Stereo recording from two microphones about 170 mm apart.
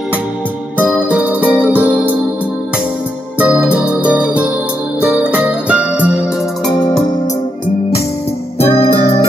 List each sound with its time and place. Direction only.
0.9 s music: 5° right (ahead or behind)
3.3 s keyboard: 10° right (ahead or behind)
3.7 s music: 5° right (ahead or behind)
5.3 s jingle bell: 10° right (ahead or behind)
8.5 s music: 35° left (ahead or behind)